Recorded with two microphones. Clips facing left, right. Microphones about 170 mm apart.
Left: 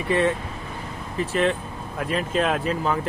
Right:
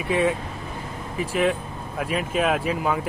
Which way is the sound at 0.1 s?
10° right (ahead or behind).